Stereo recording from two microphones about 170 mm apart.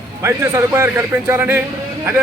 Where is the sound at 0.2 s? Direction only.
15° right (ahead or behind).